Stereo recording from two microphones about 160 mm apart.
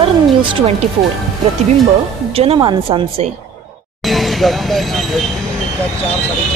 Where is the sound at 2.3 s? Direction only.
35° right (ahead or behind).